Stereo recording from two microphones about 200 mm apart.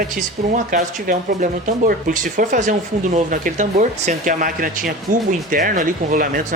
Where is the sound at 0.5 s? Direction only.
40° right (ahead or behind).